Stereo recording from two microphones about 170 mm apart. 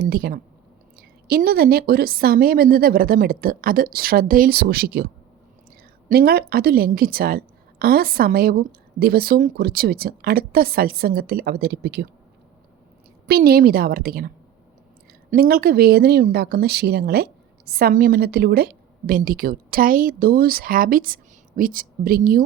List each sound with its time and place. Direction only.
0.0 s a woman's voice: 60° right (ahead or behind)
6.1 s a woman's voice: 65° right (ahead or behind)
13.2 s a woman's voice: 65° right (ahead or behind)
15.3 s a woman's voice: 65° right (ahead or behind)